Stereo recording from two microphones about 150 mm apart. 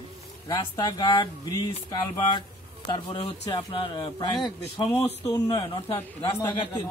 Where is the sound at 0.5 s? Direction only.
25° left (ahead or behind).